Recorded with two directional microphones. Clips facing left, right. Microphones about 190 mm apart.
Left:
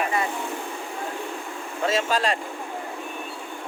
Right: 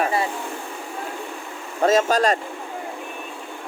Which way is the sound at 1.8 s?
45° right (ahead or behind).